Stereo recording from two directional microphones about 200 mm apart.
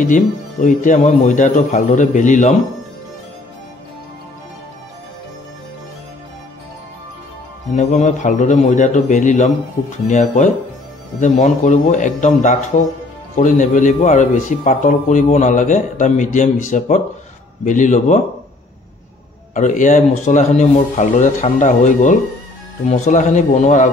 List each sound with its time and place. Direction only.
0.0 s a man's voice: 40° left (ahead or behind)
7.7 s a man's voice: 35° left (ahead or behind)
19.5 s a man's voice: 40° left (ahead or behind)